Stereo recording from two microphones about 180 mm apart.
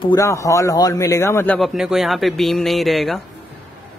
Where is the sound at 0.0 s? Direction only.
20° left (ahead or behind).